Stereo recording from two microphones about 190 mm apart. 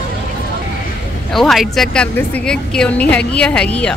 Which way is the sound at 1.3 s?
Centre (ahead or behind).